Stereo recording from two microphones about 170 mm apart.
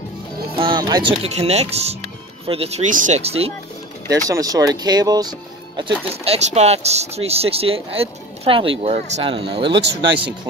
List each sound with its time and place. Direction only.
0.6 s music: 25° right (ahead or behind)
1.2 s speech: 40° right (ahead or behind)
2.9 s speech: 45° right (ahead or behind)
4.3 s speech: 20° right (ahead or behind); by 9.4 s 40° right (ahead or behind)
9.7 s speech: 90° right